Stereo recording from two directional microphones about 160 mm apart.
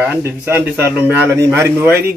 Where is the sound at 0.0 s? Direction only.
15° right (ahead or behind).